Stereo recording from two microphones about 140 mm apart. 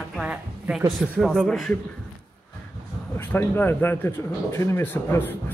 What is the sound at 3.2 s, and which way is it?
Speech, 15° left (ahead or behind).